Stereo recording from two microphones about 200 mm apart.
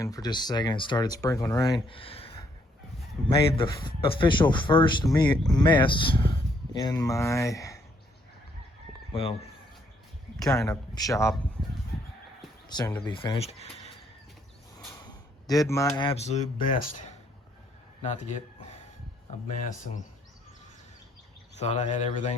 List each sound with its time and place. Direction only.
0.0 s speech: 20° left (ahead or behind)
1.9 s a sound: 25° left (ahead or behind)
3.2 s speech: 25° left (ahead or behind)
10.4 s a man's voice: 20° left (ahead or behind)
12.6 s a sound: 20° left (ahead or behind)
13.1 s speech: 25° left (ahead or behind)
15.0 s speech: 20° left (ahead or behind); by 18.3 s 35° left (ahead or behind)
21.5 s speech: 35° left (ahead or behind)